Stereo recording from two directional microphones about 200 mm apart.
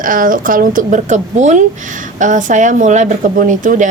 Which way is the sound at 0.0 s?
45° right (ahead or behind).